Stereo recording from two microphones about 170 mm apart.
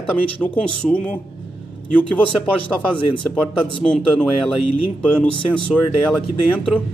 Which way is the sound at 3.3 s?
5° left (ahead or behind).